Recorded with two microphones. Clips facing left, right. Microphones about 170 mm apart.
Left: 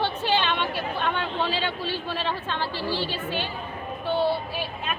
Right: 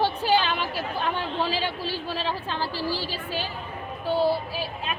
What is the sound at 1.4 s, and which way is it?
Speech, 35° right (ahead or behind).